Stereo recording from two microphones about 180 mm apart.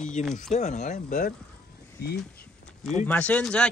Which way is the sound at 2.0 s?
60° left (ahead or behind).